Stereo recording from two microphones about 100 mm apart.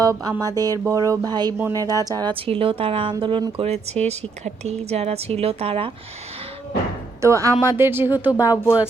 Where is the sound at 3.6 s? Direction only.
90° right; by 5.9 s 65° right (ahead or behind).